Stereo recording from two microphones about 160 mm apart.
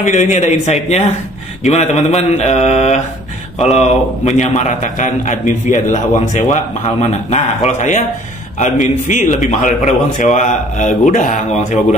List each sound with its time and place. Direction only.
0.0 s a man's voice: 50° left (ahead or behind)